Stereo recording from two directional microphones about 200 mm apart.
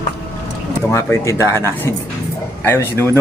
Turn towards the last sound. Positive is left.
turn(degrees=10)  # may be behind; listen again after turning